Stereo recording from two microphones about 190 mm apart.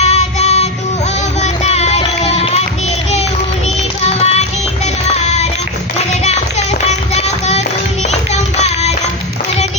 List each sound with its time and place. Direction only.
0.0 s child singing: 35° left (ahead or behind)
1.4 s music: 35° left (ahead or behind)
4.0 s music: 35° left (ahead or behind)